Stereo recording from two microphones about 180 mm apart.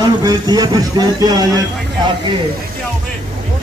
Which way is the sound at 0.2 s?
25° right (ahead or behind).